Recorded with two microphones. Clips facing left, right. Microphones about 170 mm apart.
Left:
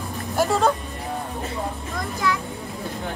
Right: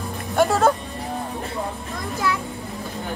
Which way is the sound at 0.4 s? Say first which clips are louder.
Right 3 dB; centre (ahead or behind).